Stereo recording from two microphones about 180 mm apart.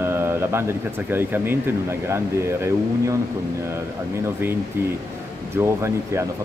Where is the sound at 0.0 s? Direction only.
15° right (ahead or behind).